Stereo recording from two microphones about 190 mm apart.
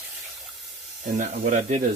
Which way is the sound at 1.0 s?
40° right (ahead or behind).